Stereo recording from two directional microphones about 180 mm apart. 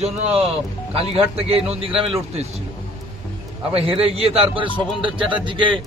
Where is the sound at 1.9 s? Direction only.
Centre (ahead or behind).